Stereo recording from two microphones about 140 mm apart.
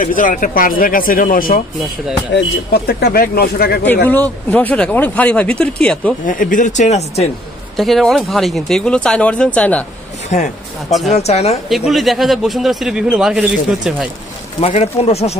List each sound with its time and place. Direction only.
0.0 s speech: 75° left (ahead or behind); by 1.6 s 90° left
2.9 s speech: 90° left
3.8 s speech: 10° left (ahead or behind)
6.2 s speech: 70° left (ahead or behind); by 7.2 s 50° left (ahead or behind)
7.7 s speech: centre (ahead or behind)
11.1 s speech: 50° left (ahead or behind)
11.9 s speech: centre (ahead or behind)
14.6 s speech: 50° left (ahead or behind)